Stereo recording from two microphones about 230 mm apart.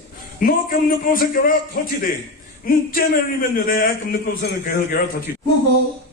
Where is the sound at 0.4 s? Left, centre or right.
Left.